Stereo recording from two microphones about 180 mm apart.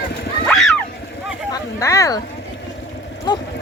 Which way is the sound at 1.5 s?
15° left (ahead or behind).